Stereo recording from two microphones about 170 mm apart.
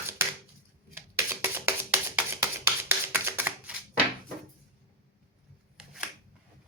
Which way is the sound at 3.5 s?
10° right (ahead or behind).